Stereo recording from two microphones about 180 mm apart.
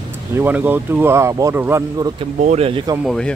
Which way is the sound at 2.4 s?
35° right (ahead or behind).